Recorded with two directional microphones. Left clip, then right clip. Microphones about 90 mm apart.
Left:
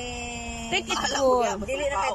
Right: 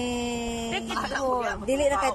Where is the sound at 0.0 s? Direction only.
45° right (ahead or behind).